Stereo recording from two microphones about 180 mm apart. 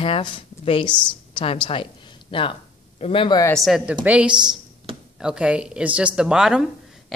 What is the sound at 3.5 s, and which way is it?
A woman's voice, centre (ahead or behind).